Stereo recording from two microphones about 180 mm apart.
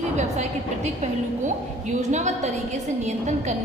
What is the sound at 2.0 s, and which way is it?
A woman's voice, 40° right (ahead or behind).